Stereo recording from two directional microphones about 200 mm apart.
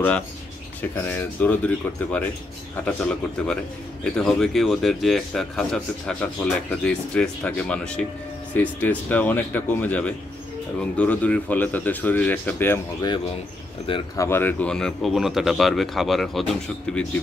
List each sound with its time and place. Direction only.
0.9 s speech: 10° left (ahead or behind)
13.8 s speech: 25° left (ahead or behind)
14.2 s speech: 10° left (ahead or behind)